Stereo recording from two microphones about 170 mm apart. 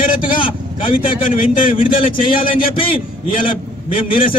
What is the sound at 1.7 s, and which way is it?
A man's voice, 30° left (ahead or behind).